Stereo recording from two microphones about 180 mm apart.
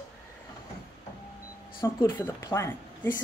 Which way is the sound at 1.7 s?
25° left (ahead or behind).